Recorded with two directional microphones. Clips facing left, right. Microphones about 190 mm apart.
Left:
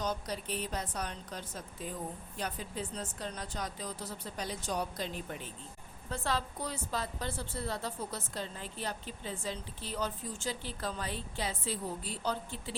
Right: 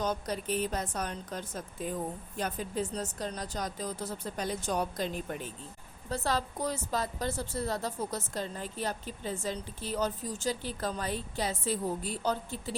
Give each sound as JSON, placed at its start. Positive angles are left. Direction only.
{"t": 0.0, "sound": "a woman's voice", "side_deg": -50}